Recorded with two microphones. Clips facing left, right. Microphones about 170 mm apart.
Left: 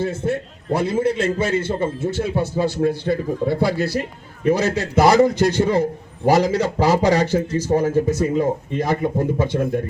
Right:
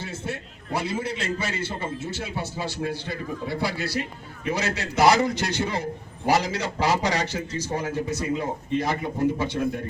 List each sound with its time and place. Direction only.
0.0 s a man's voice: 55° left (ahead or behind)